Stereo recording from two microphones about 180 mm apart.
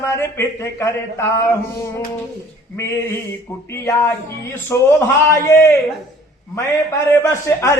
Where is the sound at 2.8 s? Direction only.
15° left (ahead or behind).